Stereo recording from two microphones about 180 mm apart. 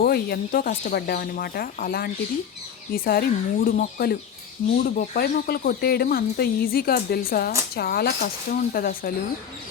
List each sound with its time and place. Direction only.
0.0 s speech: 60° left (ahead or behind)